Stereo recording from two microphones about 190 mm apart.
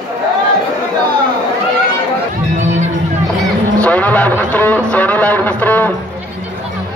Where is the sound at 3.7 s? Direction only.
10° left (ahead or behind).